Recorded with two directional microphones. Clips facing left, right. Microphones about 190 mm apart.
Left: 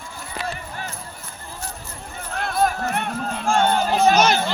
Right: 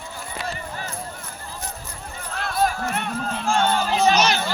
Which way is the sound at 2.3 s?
50° left (ahead or behind).